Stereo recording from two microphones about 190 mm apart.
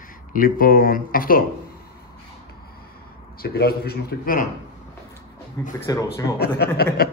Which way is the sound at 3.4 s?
55° left (ahead or behind).